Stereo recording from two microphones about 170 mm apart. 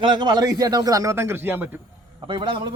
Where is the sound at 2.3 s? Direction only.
30° right (ahead or behind).